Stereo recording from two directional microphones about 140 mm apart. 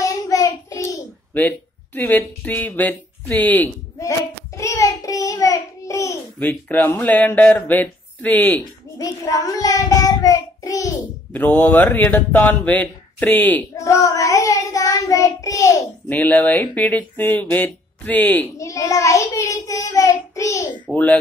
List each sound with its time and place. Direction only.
0.0 s child singing: 25° left (ahead or behind)
2.0 s speech: 10° left (ahead or behind)
4.6 s child singing: 20° left (ahead or behind)
8.9 s child singing: 25° left (ahead or behind)
11.3 s speech: 15° left (ahead or behind)
13.8 s child singing: 20° left (ahead or behind)
16.1 s speech: 10° left (ahead or behind)
20.8 s speech: 10° left (ahead or behind)